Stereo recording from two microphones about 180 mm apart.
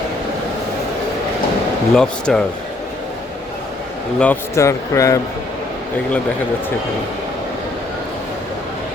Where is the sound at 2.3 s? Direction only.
Centre (ahead or behind).